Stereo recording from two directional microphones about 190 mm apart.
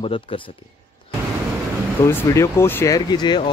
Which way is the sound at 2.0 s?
15° left (ahead or behind).